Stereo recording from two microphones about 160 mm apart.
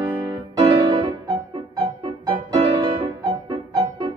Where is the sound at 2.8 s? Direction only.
30° right (ahead or behind).